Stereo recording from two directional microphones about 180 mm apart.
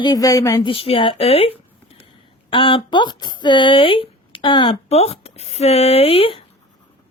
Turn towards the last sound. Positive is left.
turn(degrees=30)  # may be behind; listen again after turning